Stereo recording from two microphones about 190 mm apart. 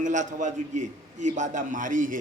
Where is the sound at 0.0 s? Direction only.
40° right (ahead or behind).